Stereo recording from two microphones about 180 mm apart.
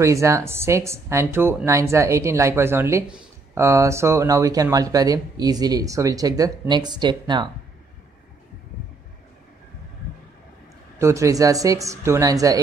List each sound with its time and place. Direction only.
0.0 s speech: 15° right (ahead or behind)
11.0 s speech: 15° right (ahead or behind)